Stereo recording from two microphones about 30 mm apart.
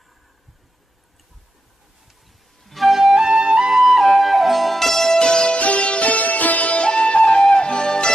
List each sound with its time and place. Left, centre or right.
2.6 s flute: centre
3.3 s flute: right
3.7 s music: centre
5.2 s music: left
5.6 s music: left
6.0 s music: left
6.8 s music: left